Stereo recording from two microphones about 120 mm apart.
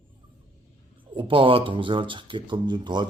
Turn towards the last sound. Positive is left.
turn(degrees=-40)  # may be behind; listen again after turning